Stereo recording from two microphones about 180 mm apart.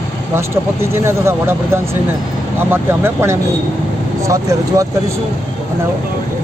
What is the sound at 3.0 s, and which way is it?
Speech, 15° right (ahead or behind).